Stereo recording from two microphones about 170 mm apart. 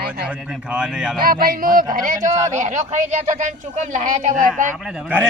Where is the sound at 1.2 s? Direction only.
55° right (ahead or behind).